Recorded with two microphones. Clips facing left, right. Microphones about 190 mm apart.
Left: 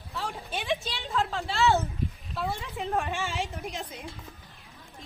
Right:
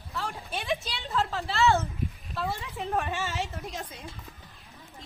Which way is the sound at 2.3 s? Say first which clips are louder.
Even; centre (ahead or behind).